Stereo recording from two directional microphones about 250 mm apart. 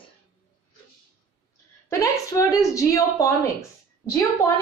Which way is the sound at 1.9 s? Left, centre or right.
Centre.